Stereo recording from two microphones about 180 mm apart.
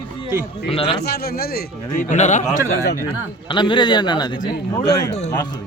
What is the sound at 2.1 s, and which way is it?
Speech, 40° left (ahead or behind).